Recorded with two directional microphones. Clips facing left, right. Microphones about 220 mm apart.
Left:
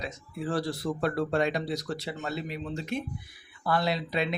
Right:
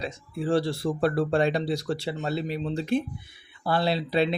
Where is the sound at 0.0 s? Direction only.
30° right (ahead or behind).